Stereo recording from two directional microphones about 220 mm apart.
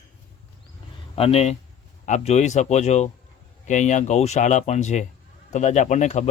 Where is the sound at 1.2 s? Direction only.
25° left (ahead or behind).